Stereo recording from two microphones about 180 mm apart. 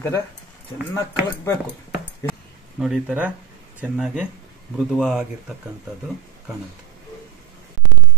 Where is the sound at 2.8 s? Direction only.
5° right (ahead or behind).